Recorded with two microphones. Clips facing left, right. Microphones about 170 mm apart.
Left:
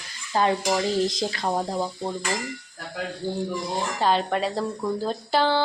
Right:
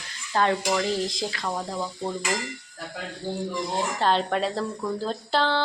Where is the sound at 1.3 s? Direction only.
35° left (ahead or behind).